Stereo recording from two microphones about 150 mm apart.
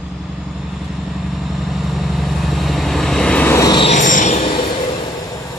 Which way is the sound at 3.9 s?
60° left (ahead or behind).